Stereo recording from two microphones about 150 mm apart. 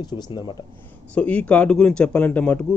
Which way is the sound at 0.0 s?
30° left (ahead or behind).